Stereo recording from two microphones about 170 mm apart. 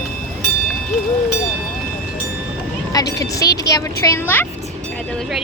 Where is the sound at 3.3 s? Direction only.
20° left (ahead or behind).